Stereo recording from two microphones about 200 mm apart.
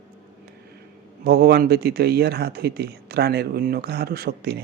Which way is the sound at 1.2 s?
50° right (ahead or behind).